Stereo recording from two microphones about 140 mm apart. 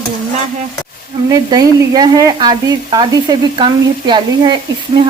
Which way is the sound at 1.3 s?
25° right (ahead or behind).